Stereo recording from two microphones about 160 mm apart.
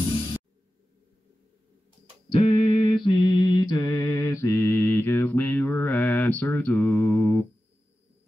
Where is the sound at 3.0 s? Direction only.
30° left (ahead or behind); by 7.4 s 15° left (ahead or behind).